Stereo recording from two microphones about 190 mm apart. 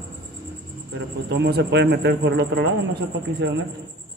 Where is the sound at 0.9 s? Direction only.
65° right (ahead or behind).